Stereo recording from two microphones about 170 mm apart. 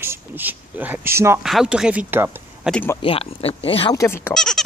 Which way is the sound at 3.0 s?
35° left (ahead or behind).